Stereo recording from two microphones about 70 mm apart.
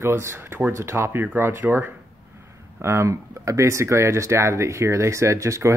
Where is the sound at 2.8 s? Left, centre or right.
Right.